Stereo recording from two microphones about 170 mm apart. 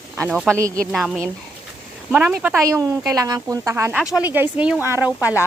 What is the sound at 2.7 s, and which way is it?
Speech, 20° right (ahead or behind).